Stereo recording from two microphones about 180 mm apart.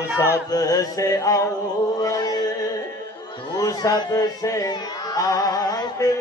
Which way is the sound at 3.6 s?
20° left (ahead or behind).